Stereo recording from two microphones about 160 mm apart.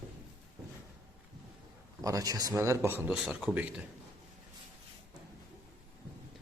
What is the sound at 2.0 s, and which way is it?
A man's voice, 20° right (ahead or behind).